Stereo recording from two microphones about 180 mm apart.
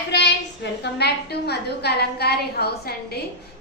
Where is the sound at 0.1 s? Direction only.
70° left (ahead or behind).